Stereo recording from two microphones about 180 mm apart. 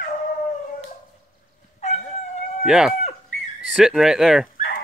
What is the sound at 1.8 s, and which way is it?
Dog, 35° left (ahead or behind).